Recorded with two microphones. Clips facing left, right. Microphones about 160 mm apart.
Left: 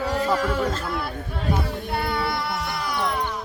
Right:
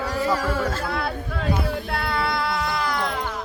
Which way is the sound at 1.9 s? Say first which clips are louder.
Even; 90° right.